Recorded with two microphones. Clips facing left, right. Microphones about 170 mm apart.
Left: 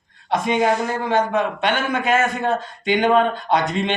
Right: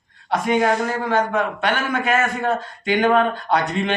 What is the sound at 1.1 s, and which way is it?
Speech, 20° left (ahead or behind).